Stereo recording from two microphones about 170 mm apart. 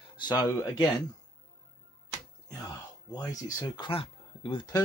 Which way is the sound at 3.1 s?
20° left (ahead or behind).